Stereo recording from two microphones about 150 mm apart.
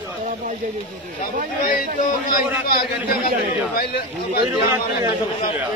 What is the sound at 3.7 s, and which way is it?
Speech, 90° left.